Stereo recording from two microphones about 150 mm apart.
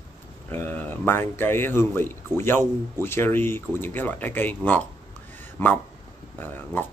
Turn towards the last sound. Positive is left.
turn(degrees=15)  # may be behind; listen again after turning